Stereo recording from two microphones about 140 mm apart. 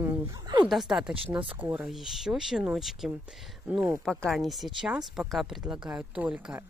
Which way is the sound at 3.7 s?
15° right (ahead or behind).